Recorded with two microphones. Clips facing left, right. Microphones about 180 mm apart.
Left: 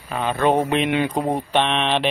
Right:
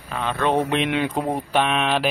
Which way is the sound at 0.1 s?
10° left (ahead or behind).